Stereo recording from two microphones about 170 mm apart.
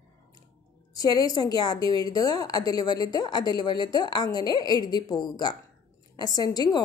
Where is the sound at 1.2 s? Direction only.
25° left (ahead or behind).